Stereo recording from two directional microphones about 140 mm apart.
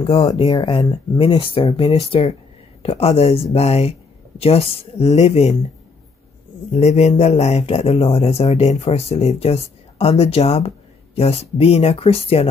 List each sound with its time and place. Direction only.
0.0 s speech: 40° left (ahead or behind)
6.7 s speech: 50° left (ahead or behind)